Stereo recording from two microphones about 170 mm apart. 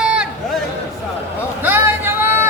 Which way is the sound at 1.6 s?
10° right (ahead or behind).